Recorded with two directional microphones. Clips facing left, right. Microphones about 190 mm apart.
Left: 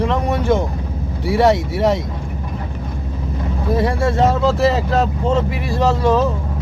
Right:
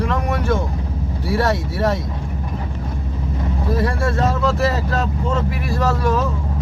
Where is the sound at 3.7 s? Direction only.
20° left (ahead or behind).